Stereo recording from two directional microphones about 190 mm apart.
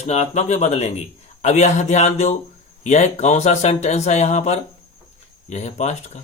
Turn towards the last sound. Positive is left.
turn(degrees=35)  # may be behind; listen again after turning